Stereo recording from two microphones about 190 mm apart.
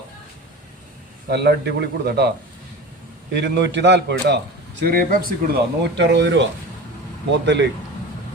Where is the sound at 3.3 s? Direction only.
65° right (ahead or behind).